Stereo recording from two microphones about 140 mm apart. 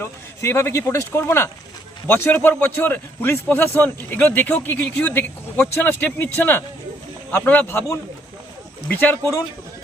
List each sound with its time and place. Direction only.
0.0 s a man's voice: 20° left (ahead or behind)
8.9 s a man's voice: 10° left (ahead or behind)